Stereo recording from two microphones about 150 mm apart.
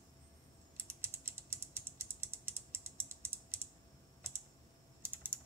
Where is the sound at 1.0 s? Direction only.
15° right (ahead or behind).